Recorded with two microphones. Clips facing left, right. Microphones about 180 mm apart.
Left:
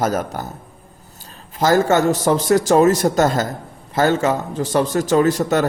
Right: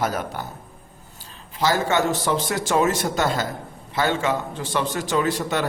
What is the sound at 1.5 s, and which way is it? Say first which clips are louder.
A man's voice: left 6 dB; 45° left (ahead or behind).